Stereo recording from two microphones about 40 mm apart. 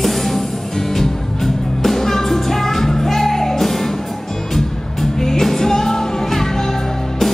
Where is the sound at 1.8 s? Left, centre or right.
Centre.